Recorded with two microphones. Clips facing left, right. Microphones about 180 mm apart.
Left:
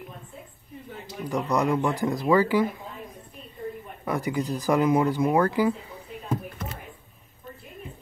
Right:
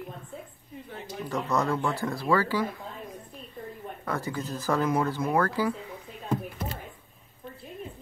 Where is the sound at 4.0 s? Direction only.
15° left (ahead or behind).